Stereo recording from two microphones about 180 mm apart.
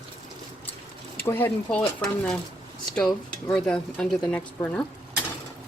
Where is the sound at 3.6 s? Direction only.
5° left (ahead or behind).